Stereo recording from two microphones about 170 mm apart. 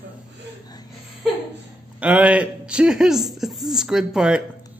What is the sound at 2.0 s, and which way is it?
Speech, 10° right (ahead or behind).